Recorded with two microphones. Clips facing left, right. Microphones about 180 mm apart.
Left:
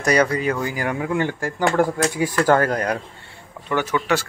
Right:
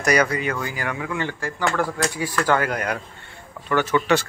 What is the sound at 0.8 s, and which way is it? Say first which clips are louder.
Speech: left 6 dB; 45° left (ahead or behind).